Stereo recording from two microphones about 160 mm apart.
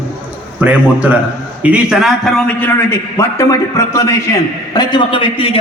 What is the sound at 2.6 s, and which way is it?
A man's voice, 15° left (ahead or behind).